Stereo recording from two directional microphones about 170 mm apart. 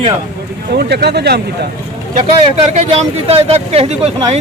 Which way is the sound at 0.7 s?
70° right (ahead or behind).